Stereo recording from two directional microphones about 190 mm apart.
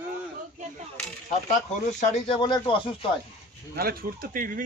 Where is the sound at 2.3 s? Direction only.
25° left (ahead or behind).